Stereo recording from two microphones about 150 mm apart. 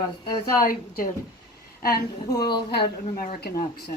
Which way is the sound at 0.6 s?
70° left (ahead or behind).